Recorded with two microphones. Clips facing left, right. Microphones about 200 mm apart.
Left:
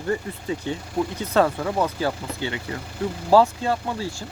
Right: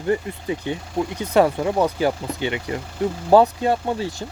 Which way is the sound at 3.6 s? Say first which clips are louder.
Right 4 dB; 20° right (ahead or behind).